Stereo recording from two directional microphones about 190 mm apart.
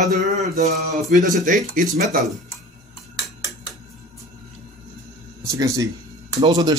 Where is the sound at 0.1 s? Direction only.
40° right (ahead or behind).